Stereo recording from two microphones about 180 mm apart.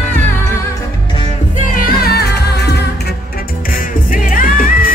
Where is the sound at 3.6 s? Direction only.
50° left (ahead or behind).